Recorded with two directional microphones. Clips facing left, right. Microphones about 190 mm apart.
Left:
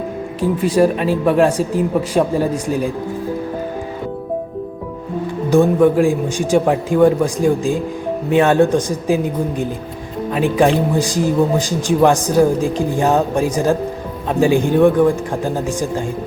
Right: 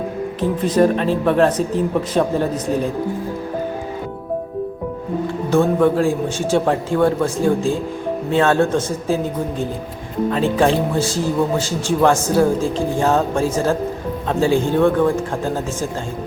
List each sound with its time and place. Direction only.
0.5 s speech: 10° left (ahead or behind)
5.5 s speech: 15° left (ahead or behind)